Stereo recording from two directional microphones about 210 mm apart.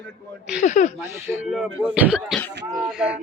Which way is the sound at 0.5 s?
35° left (ahead or behind).